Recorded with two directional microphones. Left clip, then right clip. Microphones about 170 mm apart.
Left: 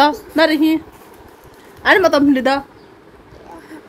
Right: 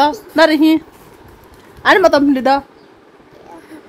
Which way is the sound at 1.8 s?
20° right (ahead or behind).